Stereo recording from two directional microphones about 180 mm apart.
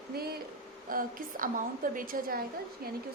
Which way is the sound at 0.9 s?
50° right (ahead or behind).